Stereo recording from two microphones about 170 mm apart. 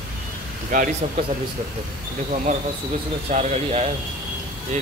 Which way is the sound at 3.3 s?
40° right (ahead or behind).